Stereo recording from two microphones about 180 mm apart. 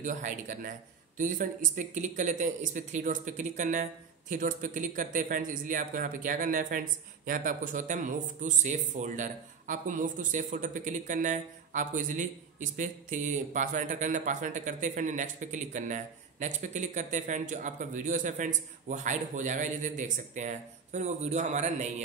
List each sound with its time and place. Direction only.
0.0 s speech: 45° right (ahead or behind)